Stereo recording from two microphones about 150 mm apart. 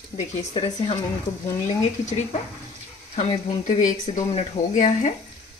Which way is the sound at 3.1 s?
40° left (ahead or behind).